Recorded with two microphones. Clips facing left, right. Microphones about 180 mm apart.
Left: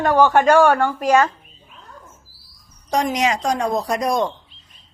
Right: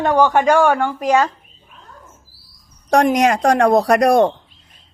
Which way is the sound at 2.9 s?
65° right (ahead or behind).